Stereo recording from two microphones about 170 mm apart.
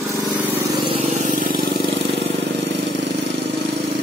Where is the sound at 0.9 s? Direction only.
45° right (ahead or behind).